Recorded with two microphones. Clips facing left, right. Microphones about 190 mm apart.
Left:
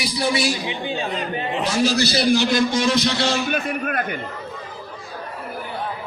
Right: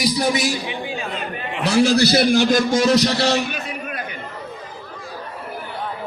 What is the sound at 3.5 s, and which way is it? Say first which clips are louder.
Speech: left 5 dB; 55° left (ahead or behind).